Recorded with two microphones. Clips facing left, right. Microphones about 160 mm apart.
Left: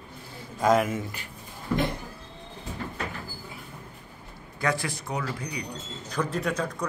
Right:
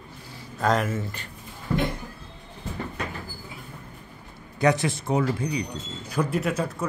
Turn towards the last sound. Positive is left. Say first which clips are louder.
# right 2 dB
turn(degrees=-5)  # may be behind; listen again after turning